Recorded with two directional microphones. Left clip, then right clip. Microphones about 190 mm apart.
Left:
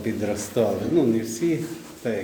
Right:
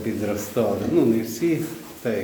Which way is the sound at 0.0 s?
25° left (ahead or behind).